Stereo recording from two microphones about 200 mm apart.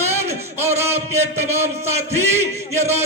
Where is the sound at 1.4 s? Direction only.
10° right (ahead or behind).